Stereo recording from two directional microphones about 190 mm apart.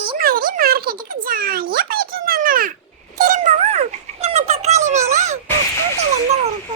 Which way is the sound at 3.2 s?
40° right (ahead or behind).